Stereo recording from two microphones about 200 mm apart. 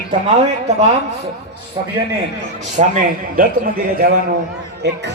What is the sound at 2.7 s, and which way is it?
Speech, 40° right (ahead or behind).